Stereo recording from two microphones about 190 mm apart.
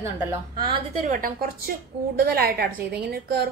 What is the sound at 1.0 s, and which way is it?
A woman's voice, 45° right (ahead or behind).